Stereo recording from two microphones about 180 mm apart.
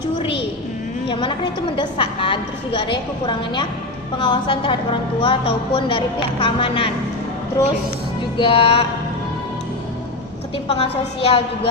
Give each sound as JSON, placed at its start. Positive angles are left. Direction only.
{"t": 0.2, "sound": "a sound", "side_deg": 30}
{"t": 1.0, "sound": "a woman's voice", "side_deg": 30}
{"t": 8.4, "sound": "a woman's voice", "side_deg": 30}
{"t": 10.7, "sound": "a woman's voice", "side_deg": 35}